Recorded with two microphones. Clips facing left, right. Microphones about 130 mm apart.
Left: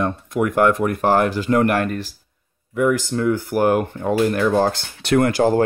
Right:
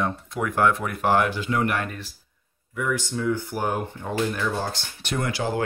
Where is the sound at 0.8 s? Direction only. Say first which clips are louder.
Left 5 dB; 45° left (ahead or behind).